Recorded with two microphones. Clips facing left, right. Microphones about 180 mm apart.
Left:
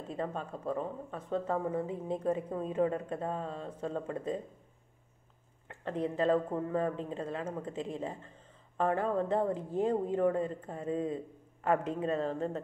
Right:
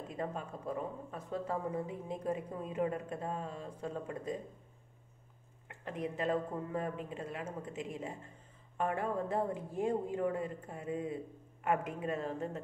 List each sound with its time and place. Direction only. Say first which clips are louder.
0.1 s speech: left 4 dB; 30° left (ahead or behind)
5.9 s speech: left 6 dB; 30° left (ahead or behind)